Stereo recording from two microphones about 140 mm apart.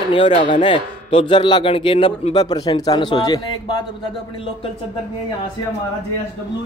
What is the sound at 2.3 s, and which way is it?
A man's voice, 30° left (ahead or behind).